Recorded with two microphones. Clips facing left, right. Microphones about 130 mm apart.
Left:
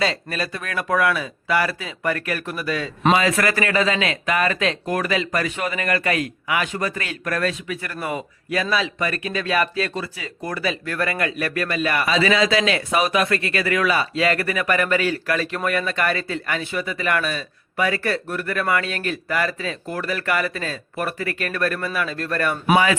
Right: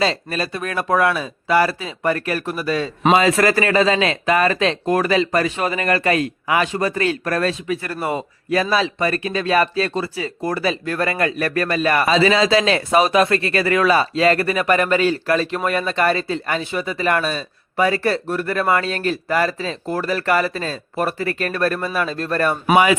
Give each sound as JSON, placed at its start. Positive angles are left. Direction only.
{"t": 0.0, "sound": "speech", "side_deg": -25}